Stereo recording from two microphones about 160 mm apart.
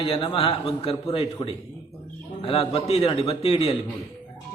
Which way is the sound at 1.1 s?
35° left (ahead or behind).